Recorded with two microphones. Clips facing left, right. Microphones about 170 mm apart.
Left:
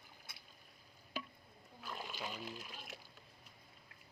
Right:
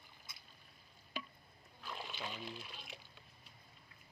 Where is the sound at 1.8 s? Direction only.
5° left (ahead or behind).